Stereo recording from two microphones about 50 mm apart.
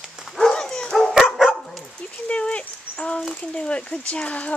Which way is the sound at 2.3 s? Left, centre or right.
Left.